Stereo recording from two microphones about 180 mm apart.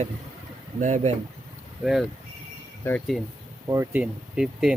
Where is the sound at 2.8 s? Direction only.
10° left (ahead or behind).